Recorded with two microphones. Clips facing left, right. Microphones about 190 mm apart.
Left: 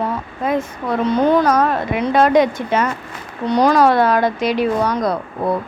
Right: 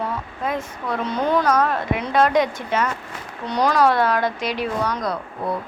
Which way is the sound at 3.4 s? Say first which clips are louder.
Left 5 dB; 25° left (ahead or behind).